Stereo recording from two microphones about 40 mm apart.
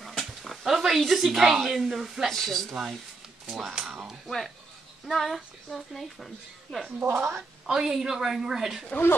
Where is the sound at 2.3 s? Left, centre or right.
Centre.